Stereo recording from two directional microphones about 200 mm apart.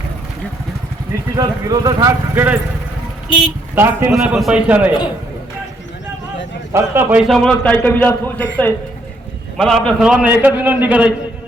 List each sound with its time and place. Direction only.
1.4 s a man's voice: 20° right (ahead or behind)
3.8 s a man's voice: 10° right (ahead or behind)
6.7 s a man's voice: 10° right (ahead or behind)